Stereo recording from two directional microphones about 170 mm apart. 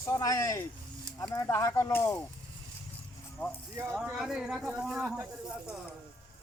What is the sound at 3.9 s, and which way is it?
Speech, 5° right (ahead or behind).